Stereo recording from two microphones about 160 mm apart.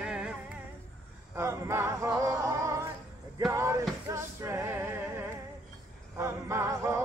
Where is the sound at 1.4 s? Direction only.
15° right (ahead or behind).